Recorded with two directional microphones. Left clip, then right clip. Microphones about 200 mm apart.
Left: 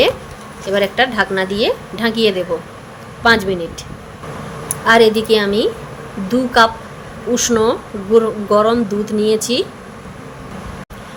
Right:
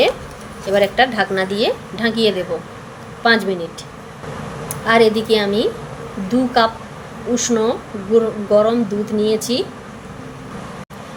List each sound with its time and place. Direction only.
0.7 s a woman's voice: 10° left (ahead or behind)
4.7 s a woman's voice: 15° left (ahead or behind)